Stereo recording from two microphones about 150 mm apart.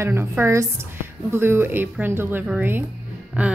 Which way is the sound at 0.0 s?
15° right (ahead or behind).